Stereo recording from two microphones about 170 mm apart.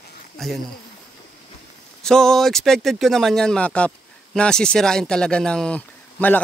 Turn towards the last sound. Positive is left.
turn(degrees=10)  # may be behind; listen again after turning